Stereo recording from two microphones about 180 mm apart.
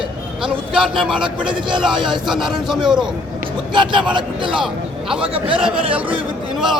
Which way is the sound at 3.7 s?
25° right (ahead or behind).